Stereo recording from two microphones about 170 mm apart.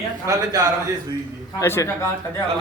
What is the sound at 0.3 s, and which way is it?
Speech, 20° right (ahead or behind).